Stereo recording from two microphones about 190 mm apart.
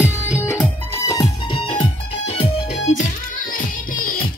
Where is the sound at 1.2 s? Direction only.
25° left (ahead or behind); by 4.1 s 45° left (ahead or behind).